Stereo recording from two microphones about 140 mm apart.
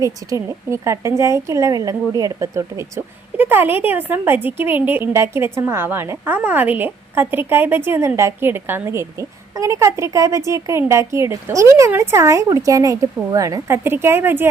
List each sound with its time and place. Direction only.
0.0 s a woman's voice: 25° right (ahead or behind)